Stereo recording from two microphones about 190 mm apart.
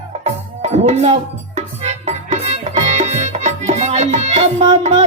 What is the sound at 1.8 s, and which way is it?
Music, 40° right (ahead or behind).